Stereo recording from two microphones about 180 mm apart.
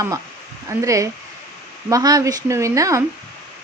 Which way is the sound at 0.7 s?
20° right (ahead or behind).